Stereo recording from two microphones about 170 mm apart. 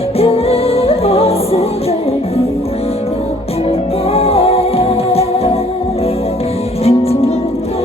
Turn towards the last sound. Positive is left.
turn(degrees=35)  # may be behind; listen again after turning